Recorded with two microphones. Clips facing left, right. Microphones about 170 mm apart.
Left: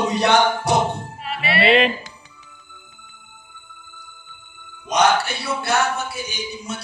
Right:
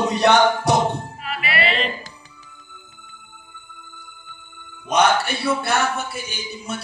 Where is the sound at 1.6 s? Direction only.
75° left (ahead or behind).